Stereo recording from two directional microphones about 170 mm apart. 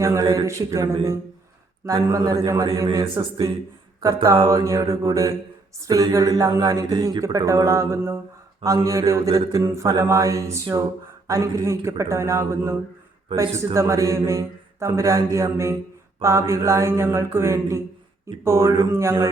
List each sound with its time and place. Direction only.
0.0 s speech: 20° right (ahead or behind)
11.3 s mantra: 20° right (ahead or behind)
13.3 s a man's voice: 30° right (ahead or behind)
13.7 s mantra: 15° right (ahead or behind)